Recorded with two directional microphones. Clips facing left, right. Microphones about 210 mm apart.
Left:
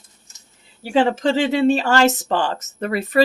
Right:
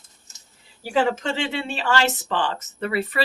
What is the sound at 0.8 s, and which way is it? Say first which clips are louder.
Speech: left 4 dB; 25° left (ahead or behind).